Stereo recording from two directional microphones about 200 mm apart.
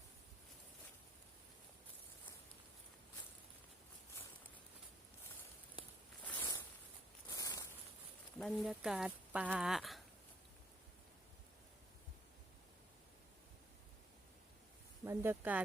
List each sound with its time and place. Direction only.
6.2 s a sound: 10° left (ahead or behind)
8.4 s speech: centre (ahead or behind)
15.0 s speech: 15° right (ahead or behind)